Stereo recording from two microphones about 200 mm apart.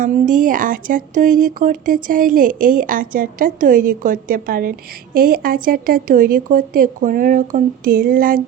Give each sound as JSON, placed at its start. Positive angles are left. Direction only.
{"t": 0.0, "sound": "speech", "side_deg": -40}